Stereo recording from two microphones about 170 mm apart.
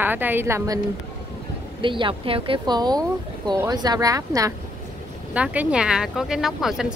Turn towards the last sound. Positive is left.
turn(degrees=0)  # may be behind; listen again after turning